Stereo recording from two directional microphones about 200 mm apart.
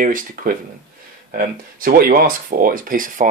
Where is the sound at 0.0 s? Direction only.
45° right (ahead or behind).